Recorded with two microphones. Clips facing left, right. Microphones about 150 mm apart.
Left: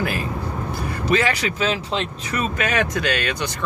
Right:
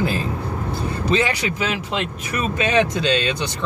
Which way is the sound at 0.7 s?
20° right (ahead or behind).